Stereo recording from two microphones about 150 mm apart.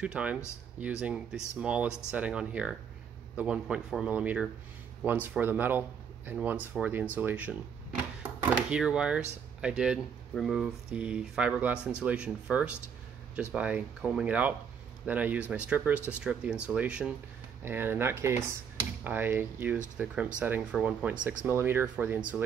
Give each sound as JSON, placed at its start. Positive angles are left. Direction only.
{"t": 0.0, "sound": "speech", "side_deg": -10}
{"t": 8.2, "sound": "a sound", "side_deg": -10}
{"t": 9.6, "sound": "speech", "side_deg": -5}